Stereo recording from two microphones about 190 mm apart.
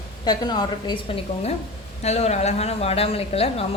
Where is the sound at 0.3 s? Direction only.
20° left (ahead or behind).